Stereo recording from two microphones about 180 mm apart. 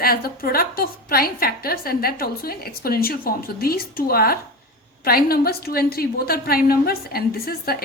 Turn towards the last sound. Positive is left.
turn(degrees=55)  # may be behind; listen again after turning